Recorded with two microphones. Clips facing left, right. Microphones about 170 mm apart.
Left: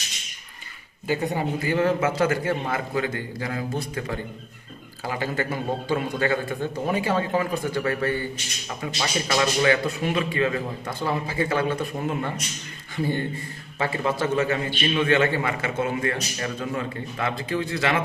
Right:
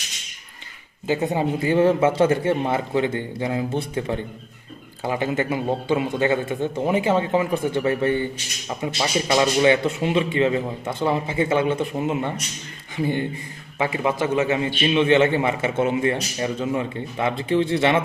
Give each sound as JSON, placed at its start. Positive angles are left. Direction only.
{"t": 1.0, "sound": "a man's voice", "side_deg": -20}